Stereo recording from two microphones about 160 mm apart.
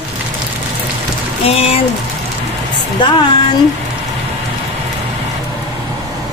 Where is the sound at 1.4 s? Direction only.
40° left (ahead or behind).